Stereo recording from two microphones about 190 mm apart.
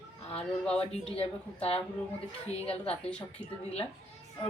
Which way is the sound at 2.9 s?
5° left (ahead or behind).